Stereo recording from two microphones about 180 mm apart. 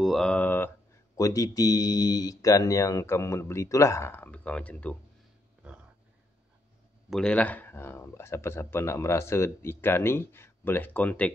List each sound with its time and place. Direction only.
0.0 s speech: centre (ahead or behind)
7.1 s speech: 5° left (ahead or behind)